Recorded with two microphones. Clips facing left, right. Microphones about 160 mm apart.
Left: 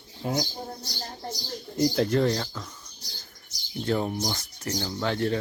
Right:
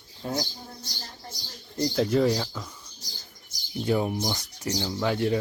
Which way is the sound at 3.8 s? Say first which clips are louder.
Right 1 dB; 10° right (ahead or behind).